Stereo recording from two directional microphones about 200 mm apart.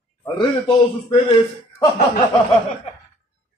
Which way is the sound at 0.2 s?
20° left (ahead or behind).